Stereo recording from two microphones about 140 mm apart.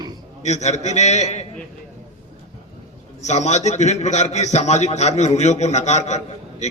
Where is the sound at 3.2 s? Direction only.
55° left (ahead or behind).